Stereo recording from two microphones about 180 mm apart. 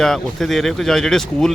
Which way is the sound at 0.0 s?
Centre (ahead or behind).